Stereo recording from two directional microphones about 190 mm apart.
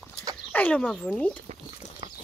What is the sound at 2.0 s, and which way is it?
Horse, 25° right (ahead or behind).